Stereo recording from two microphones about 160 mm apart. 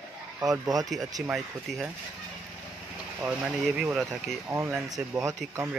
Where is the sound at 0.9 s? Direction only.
20° right (ahead or behind).